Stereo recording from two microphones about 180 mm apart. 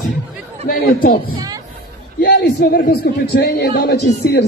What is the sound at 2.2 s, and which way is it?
Speech, 65° left (ahead or behind).